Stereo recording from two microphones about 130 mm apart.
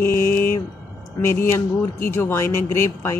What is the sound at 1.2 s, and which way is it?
Speech, 20° left (ahead or behind).